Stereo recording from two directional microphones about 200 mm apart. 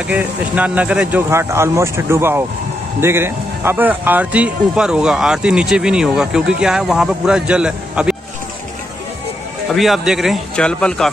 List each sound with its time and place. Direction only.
0.1 s speech: 5° right (ahead or behind)
9.7 s speech: centre (ahead or behind)